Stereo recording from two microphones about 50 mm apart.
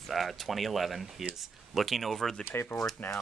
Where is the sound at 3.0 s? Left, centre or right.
Left.